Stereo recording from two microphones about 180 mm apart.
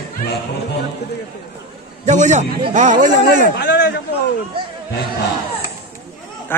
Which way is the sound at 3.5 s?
70° left (ahead or behind).